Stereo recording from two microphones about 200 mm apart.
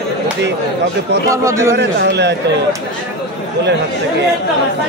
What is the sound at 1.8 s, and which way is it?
Speech, 55° right (ahead or behind).